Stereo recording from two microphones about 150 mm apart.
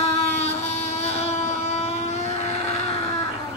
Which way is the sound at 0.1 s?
45° left (ahead or behind).